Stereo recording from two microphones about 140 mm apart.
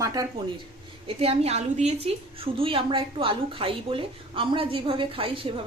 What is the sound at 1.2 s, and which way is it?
A woman's voice, 45° right (ahead or behind).